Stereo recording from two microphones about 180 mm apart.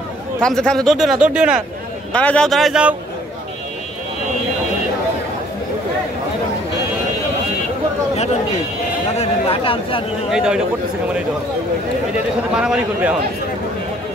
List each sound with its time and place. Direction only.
0.4 s speech: 5° left (ahead or behind)
2.1 s speech: 5° left (ahead or behind)
9.1 s a sound: 35° left (ahead or behind)
10.3 s speech: 5° right (ahead or behind)
12.5 s speech: 5° right (ahead or behind)